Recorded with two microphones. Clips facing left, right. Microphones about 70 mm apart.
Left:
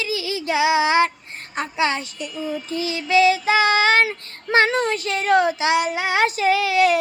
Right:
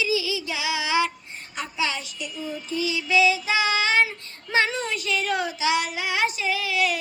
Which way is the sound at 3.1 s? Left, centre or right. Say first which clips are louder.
Left 5 dB; left.